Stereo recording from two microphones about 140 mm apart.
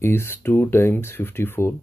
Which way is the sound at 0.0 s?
15° left (ahead or behind).